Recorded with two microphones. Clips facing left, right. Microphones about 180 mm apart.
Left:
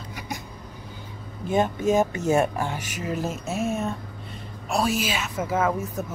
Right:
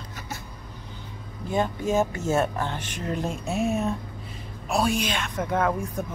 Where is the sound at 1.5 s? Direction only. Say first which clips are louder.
Left 3 dB; 20° left (ahead or behind).